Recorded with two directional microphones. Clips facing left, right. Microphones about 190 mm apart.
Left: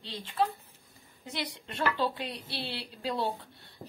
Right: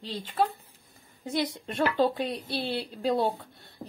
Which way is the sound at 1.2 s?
50° right (ahead or behind).